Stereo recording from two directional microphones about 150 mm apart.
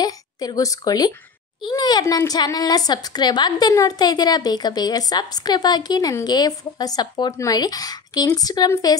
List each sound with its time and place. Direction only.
0.0 s a woman's voice: 25° left (ahead or behind)